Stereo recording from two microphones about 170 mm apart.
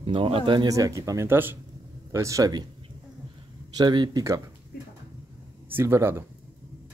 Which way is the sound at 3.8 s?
25° right (ahead or behind).